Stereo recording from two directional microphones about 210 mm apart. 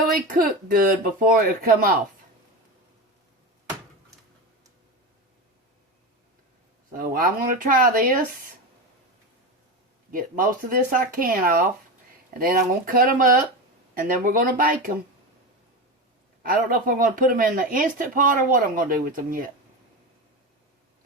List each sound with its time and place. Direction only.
0.3 s speech: 40° right (ahead or behind)
7.0 s speech: 45° right (ahead or behind)
10.1 s speech: 40° right (ahead or behind)
16.4 s speech: 40° right (ahead or behind)